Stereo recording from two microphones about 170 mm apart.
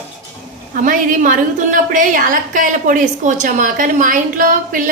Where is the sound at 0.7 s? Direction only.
50° right (ahead or behind).